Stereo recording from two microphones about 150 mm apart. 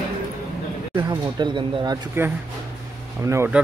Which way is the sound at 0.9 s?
30° right (ahead or behind).